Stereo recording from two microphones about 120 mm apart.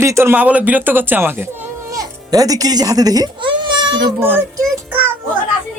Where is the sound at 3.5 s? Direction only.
40° right (ahead or behind).